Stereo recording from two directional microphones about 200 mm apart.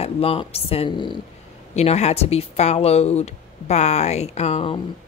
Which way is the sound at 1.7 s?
35° left (ahead or behind).